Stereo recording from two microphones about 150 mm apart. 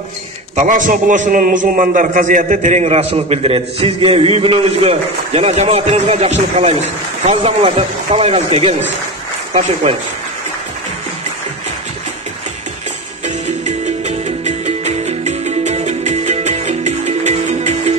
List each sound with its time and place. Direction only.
0.6 s a man's voice: 55° right (ahead or behind); by 8.7 s 40° right (ahead or behind)
9.8 s a man's voice: 50° right (ahead or behind)
13.2 s music: 50° right (ahead or behind)